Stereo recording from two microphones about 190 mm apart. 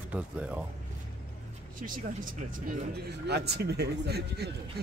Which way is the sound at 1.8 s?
45° right (ahead or behind).